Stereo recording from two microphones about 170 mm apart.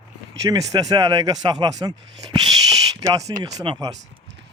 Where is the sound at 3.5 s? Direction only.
30° right (ahead or behind).